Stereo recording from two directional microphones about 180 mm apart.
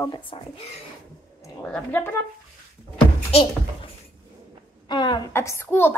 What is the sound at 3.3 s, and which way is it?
Child singing, 35° left (ahead or behind).